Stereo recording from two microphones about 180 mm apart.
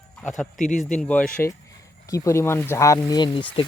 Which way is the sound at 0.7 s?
Centre (ahead or behind).